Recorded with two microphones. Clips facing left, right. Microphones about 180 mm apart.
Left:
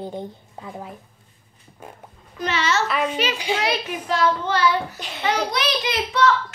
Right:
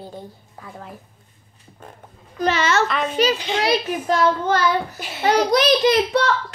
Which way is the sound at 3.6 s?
45° right (ahead or behind).